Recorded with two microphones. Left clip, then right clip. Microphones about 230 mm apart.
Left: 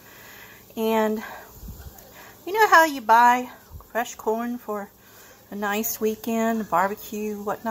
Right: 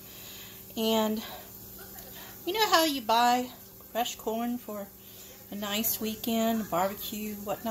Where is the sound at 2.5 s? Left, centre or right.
Centre.